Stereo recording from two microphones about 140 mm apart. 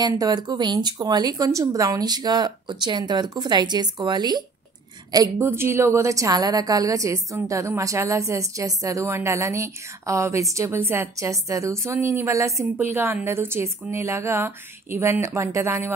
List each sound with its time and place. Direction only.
0.0 s a woman's voice: 25° right (ahead or behind)